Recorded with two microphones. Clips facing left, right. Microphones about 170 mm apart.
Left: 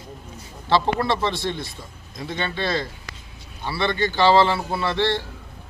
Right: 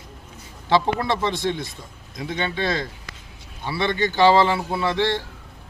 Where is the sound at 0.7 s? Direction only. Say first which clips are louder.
Even; 15° right (ahead or behind).